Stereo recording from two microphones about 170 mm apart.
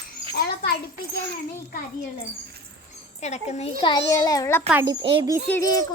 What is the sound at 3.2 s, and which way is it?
Speech, 40° left (ahead or behind).